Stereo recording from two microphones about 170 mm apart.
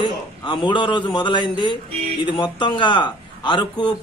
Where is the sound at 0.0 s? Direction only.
30° left (ahead or behind).